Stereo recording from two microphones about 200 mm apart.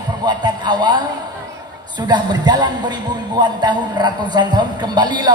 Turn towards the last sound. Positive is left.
turn(degrees=-20)  # may be behind; listen again after turning